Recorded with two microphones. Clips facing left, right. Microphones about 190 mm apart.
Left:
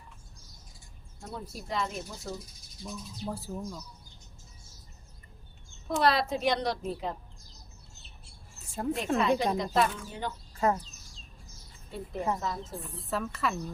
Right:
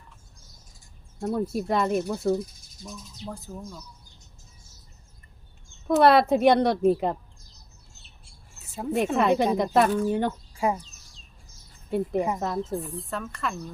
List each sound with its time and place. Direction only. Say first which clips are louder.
1.2 s a woman's voice: right 14 dB; 60° right (ahead or behind)
2.8 s speech: left 1 dB; 10° left (ahead or behind)
6.0 s a woman's voice: right 9 dB; 60° right (ahead or behind)
8.7 s speech: right 1 dB; 5° right (ahead or behind)
9.1 s a woman's voice: right 4 dB; 55° right (ahead or behind)
10.5 s a sound: left 2 dB; 10° right (ahead or behind)
11.9 s a woman's voice: right 7 dB; 60° right (ahead or behind)
13.1 s speech: left 5 dB; centre (ahead or behind)